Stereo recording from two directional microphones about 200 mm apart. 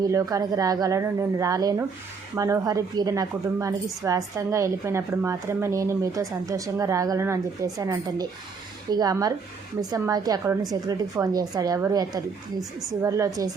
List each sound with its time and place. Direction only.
0.0 s a woman's voice: 15° right (ahead or behind)